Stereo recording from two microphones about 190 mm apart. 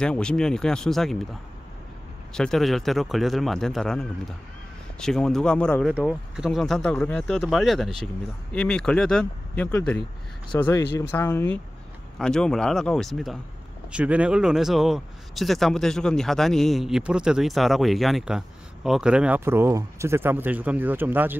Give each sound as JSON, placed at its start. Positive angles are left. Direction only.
{"t": 0.0, "sound": "speech", "side_deg": 5}
{"t": 2.3, "sound": "speech", "side_deg": 0}